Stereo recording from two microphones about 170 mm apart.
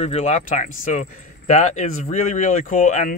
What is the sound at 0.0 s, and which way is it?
Speech, 40° left (ahead or behind).